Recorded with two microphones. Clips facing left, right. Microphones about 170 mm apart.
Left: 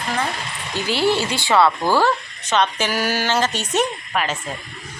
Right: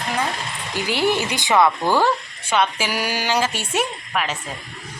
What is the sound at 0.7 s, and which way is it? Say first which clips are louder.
Speech: left 1 dB; 15° right (ahead or behind).